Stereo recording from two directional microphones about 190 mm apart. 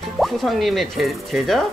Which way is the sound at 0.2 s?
Centre (ahead or behind).